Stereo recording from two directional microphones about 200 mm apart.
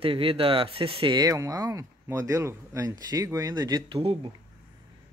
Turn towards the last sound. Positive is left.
turn(degrees=-25)  # may be behind; listen again after turning